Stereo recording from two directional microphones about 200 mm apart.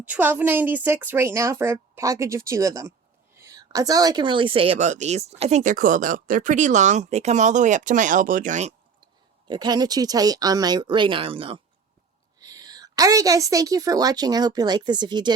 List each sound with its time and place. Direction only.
0.0 s a woman's voice: 10° right (ahead or behind); by 8.7 s 35° right (ahead or behind)
9.5 s a woman's voice: 20° right (ahead or behind)